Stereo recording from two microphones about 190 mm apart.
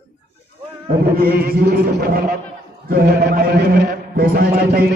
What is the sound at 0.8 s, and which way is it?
A man's voice, 50° right (ahead or behind).